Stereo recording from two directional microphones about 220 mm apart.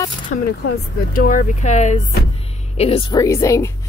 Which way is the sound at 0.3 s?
45° left (ahead or behind).